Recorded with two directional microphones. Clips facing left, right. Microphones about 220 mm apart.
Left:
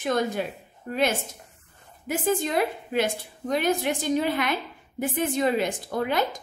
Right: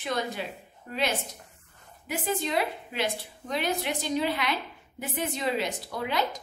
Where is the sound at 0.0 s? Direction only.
50° left (ahead or behind).